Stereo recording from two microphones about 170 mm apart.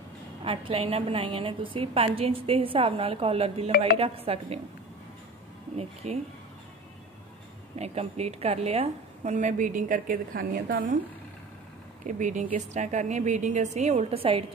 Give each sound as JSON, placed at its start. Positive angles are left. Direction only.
{"t": 0.4, "sound": "a woman's voice", "side_deg": -30}
{"t": 6.0, "sound": "a woman's voice", "side_deg": -40}
{"t": 7.8, "sound": "a woman's voice", "side_deg": -40}
{"t": 12.1, "sound": "a woman's voice", "side_deg": -45}